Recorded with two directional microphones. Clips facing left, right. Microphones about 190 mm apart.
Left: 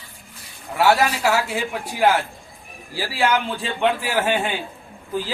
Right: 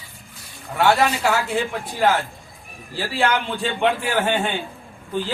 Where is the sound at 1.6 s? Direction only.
5° left (ahead or behind).